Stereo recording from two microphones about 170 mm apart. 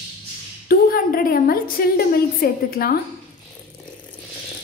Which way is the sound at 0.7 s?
55° left (ahead or behind).